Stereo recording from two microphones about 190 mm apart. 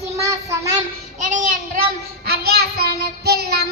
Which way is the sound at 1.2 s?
45° right (ahead or behind).